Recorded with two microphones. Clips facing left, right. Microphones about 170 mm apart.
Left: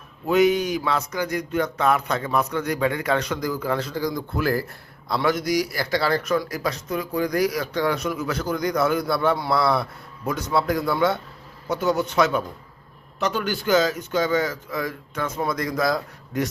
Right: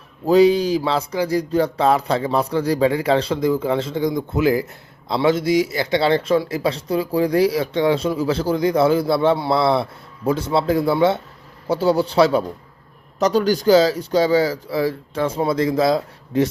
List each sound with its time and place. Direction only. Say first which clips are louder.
0.3 s a man's voice: right 5 dB; 30° right (ahead or behind)